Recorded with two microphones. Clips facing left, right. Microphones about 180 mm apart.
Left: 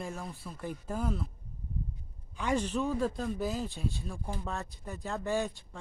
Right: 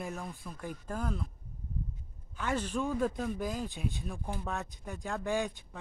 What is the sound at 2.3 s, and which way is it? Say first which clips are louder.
Speech: left 3 dB; 10° left (ahead or behind).